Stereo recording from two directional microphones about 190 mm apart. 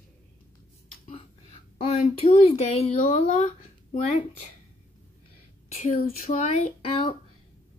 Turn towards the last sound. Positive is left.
turn(degrees=30)  # may be behind; listen again after turning